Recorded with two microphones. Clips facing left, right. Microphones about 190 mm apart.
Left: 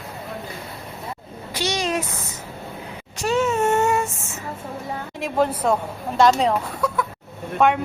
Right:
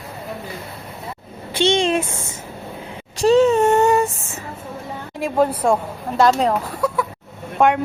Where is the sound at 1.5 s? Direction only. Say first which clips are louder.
Right 7 dB; 30° right (ahead or behind).